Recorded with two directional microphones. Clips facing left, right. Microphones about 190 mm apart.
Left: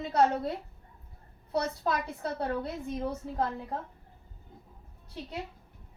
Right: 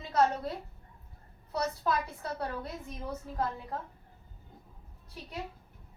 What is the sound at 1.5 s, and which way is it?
Speech, 30° left (ahead or behind).